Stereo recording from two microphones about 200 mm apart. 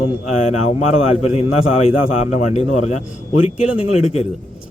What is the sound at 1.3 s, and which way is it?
A man's voice, 30° left (ahead or behind).